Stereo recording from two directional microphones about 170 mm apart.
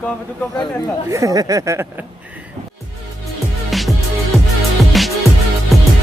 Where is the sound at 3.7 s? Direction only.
Centre (ahead or behind).